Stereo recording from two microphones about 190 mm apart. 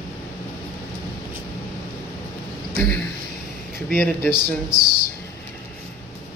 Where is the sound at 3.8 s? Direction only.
10° left (ahead or behind).